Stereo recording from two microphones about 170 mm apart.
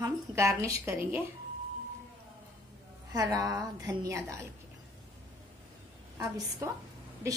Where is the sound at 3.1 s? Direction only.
20° right (ahead or behind).